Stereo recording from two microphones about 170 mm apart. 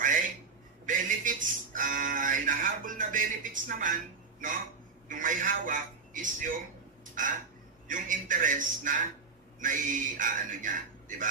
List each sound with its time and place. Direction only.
0.8 s music: 50° right (ahead or behind)
5.0 s a man's voice: 50° right (ahead or behind)
7.9 s speech: 50° right (ahead or behind)